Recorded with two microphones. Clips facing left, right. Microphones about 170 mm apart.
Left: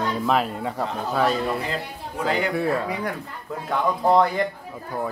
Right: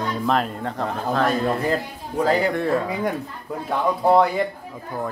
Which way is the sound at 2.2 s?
40° right (ahead or behind).